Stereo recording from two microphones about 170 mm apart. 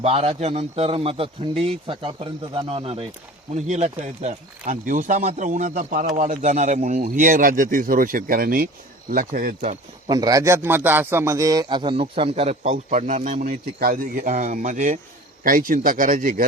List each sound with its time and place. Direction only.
0.0 s a man's voice: 35° right (ahead or behind)
10.1 s a man's voice: 20° right (ahead or behind); by 13.4 s 45° right (ahead or behind)
13.4 s speech: 60° right (ahead or behind)